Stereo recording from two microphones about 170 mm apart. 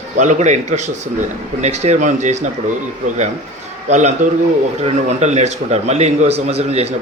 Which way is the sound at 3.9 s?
40° right (ahead or behind).